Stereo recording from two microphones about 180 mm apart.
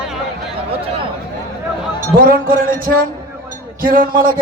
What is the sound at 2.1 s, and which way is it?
Music, 55° right (ahead or behind).